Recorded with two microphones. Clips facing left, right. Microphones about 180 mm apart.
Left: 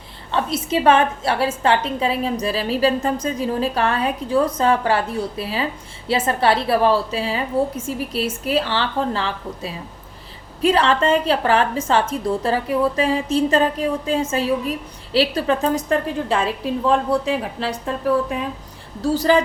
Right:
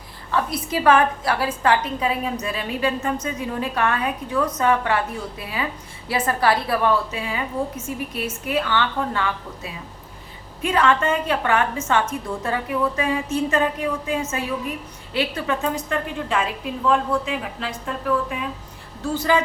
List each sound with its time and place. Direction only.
0.3 s a woman's voice: 25° left (ahead or behind)